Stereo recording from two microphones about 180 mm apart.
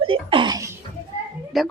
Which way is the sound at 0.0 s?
30° right (ahead or behind).